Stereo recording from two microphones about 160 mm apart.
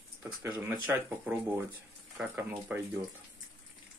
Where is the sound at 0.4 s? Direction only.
15° right (ahead or behind).